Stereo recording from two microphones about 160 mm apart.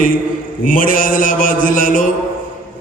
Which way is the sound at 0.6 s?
60° left (ahead or behind).